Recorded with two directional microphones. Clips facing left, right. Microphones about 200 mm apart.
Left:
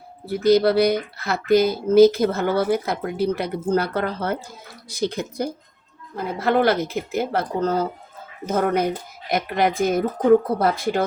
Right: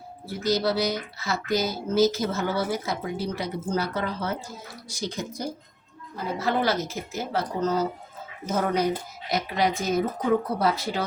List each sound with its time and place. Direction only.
0.3 s a woman's voice: 55° left (ahead or behind)